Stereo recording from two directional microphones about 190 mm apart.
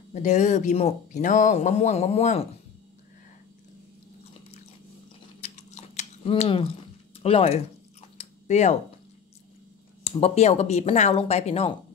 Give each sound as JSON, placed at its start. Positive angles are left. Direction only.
{"t": 0.1, "sound": "speech", "side_deg": 40}
{"t": 5.4, "sound": "chewing", "side_deg": 35}
{"t": 7.2, "sound": "speech", "side_deg": 30}
{"t": 8.2, "sound": "chewing", "side_deg": 35}
{"t": 10.0, "sound": "speech", "side_deg": 35}